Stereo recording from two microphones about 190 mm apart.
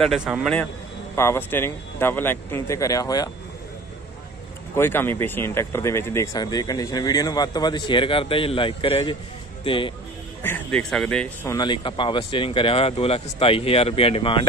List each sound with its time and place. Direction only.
0.0 s speech: centre (ahead or behind)
1.1 s speech: 15° left (ahead or behind)
4.7 s speech: 10° left (ahead or behind)
10.4 s speech: 10° left (ahead or behind)
11.5 s speech: 25° left (ahead or behind)